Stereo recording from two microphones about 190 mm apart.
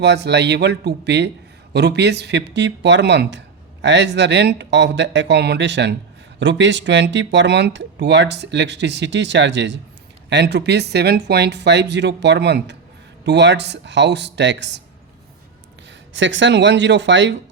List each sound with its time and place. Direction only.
0.0 s speech: 60° right (ahead or behind)
16.1 s speech: 75° right (ahead or behind)